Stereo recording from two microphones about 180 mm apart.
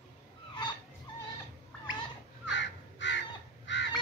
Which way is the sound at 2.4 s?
80° left.